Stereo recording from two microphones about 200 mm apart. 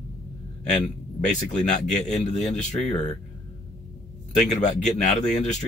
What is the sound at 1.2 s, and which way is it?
Speech, 35° left (ahead or behind).